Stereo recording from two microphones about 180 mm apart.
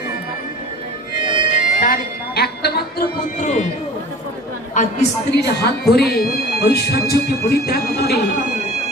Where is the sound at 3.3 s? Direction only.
45° left (ahead or behind).